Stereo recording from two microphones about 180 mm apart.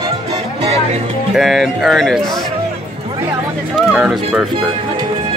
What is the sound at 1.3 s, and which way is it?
Speech, centre (ahead or behind).